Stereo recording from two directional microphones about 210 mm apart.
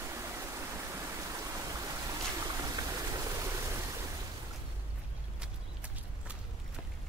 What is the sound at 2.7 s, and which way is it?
Rain, 15° right (ahead or behind).